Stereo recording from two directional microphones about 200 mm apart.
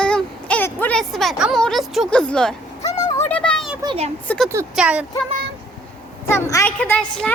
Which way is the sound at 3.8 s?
30° right (ahead or behind).